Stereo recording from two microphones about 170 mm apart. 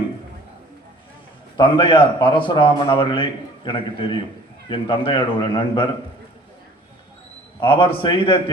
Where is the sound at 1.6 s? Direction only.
30° left (ahead or behind).